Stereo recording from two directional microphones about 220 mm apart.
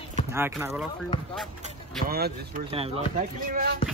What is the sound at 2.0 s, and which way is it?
Speech, 45° right (ahead or behind).